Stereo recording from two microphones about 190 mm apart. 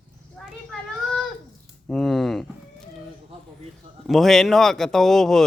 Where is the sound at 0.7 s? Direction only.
Centre (ahead or behind).